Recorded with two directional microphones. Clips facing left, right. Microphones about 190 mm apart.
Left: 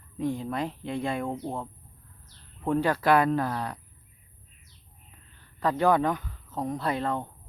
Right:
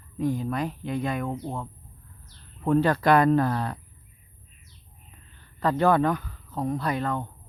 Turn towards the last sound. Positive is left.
turn(degrees=30)  # may be behind; listen again after turning